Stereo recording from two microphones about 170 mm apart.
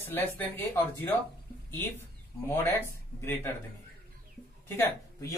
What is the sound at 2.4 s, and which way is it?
Speech, 15° left (ahead or behind).